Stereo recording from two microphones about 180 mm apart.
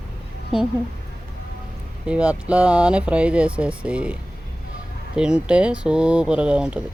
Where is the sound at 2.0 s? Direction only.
5° right (ahead or behind).